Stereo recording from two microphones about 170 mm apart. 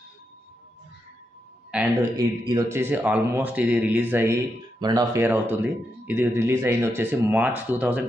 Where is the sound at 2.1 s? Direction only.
20° right (ahead or behind).